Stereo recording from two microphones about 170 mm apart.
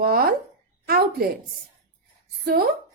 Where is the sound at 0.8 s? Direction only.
60° right (ahead or behind).